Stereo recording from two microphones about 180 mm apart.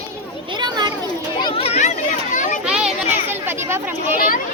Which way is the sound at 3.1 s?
10° right (ahead or behind).